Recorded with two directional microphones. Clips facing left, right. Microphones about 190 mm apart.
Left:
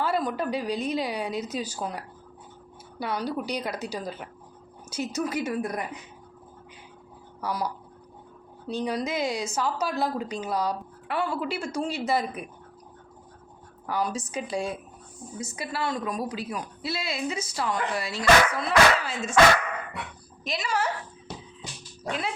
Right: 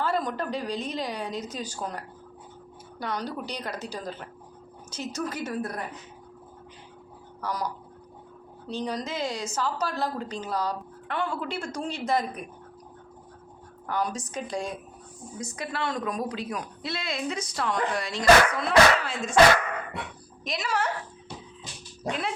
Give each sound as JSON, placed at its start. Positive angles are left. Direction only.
{"t": 0.0, "sound": "a woman's voice", "side_deg": 5}
{"t": 7.4, "sound": "a woman's voice", "side_deg": 5}
{"t": 13.8, "sound": "a woman's voice", "side_deg": 5}
{"t": 20.4, "sound": "speech", "side_deg": 0}
{"t": 22.0, "sound": "dog", "side_deg": -25}